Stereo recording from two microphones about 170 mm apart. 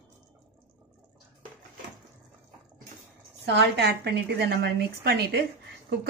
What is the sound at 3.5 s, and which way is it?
A woman's voice, 85° right.